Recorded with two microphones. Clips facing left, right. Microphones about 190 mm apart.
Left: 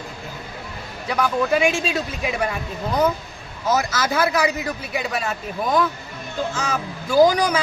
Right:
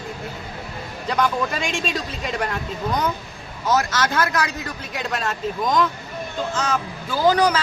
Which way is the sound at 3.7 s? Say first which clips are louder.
Even; 10° left (ahead or behind).